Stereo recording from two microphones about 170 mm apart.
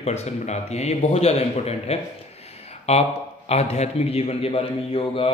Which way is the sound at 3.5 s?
40° left (ahead or behind).